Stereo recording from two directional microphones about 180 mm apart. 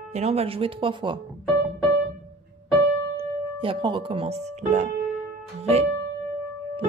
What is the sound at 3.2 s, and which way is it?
Speech, 30° right (ahead or behind).